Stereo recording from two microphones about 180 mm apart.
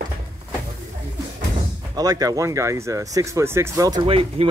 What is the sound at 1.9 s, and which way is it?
Speech, 20° right (ahead or behind).